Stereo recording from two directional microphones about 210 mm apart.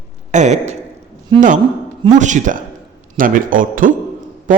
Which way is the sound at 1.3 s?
20° right (ahead or behind).